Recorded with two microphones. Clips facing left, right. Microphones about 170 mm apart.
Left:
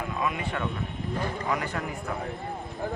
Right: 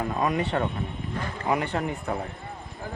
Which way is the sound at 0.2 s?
40° right (ahead or behind).